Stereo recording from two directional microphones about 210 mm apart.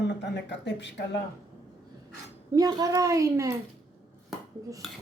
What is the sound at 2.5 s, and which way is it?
Speech, 15° right (ahead or behind).